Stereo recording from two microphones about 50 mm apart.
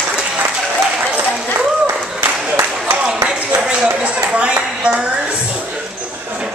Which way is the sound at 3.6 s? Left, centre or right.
Right.